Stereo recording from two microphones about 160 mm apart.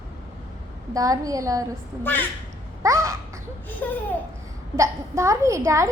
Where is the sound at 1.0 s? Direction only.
20° right (ahead or behind).